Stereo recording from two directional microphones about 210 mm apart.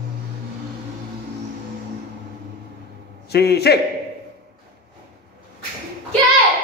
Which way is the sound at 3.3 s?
50° left (ahead or behind).